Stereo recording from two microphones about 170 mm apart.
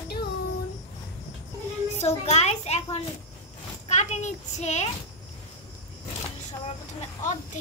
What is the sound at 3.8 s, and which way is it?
A child's voice, 40° left (ahead or behind).